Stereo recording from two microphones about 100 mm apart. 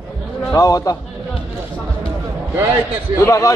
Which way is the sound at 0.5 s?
35° left (ahead or behind).